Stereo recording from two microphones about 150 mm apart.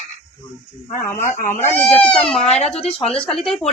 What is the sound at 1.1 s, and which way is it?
Speech, 55° left (ahead or behind).